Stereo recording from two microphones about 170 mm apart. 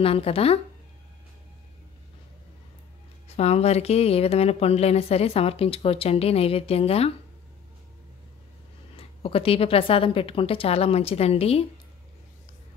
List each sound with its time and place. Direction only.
0.0 s speech: 35° left (ahead or behind)
3.3 s speech: 40° left (ahead or behind)
8.9 s speech: 35° left (ahead or behind)